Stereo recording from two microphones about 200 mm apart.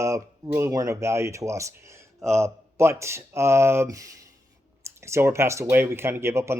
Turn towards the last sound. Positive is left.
turn(degrees=-15)  # may be behind; listen again after turning